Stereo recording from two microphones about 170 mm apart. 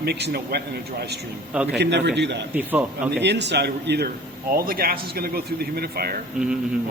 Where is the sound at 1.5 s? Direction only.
5° right (ahead or behind).